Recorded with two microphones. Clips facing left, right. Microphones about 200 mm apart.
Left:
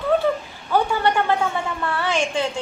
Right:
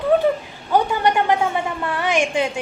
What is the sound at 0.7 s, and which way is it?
A woman's voice, 15° right (ahead or behind).